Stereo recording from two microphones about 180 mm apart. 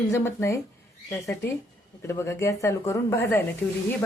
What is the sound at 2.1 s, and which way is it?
Speech, 15° left (ahead or behind).